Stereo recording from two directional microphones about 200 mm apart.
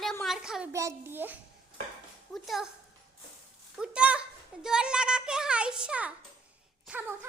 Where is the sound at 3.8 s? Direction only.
5° right (ahead or behind).